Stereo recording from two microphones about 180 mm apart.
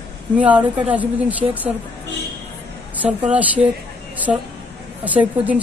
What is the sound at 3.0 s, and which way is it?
A woman's voice, 10° right (ahead or behind).